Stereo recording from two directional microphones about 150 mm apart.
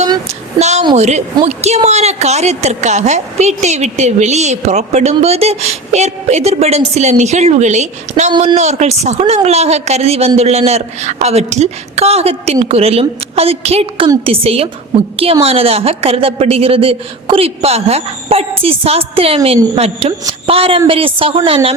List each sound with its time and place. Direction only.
0.6 s a sound: 50° right (ahead or behind)
0.9 s a woman's voice: 50° right (ahead or behind)
8.3 s a woman's voice: 30° right (ahead or behind)
8.5 s a woman's voice: 50° right (ahead or behind)